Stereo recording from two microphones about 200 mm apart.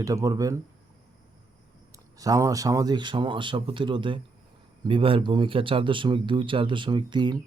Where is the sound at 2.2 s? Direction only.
15° right (ahead or behind).